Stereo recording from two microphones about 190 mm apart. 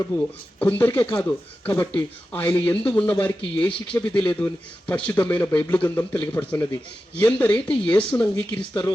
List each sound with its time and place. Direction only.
0.6 s a man's voice: 10° left (ahead or behind)